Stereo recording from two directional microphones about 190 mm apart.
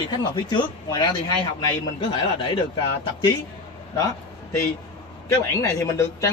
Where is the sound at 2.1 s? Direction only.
25° left (ahead or behind).